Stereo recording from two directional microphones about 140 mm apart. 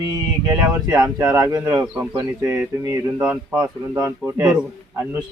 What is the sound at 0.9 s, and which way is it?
Speech, 20° right (ahead or behind).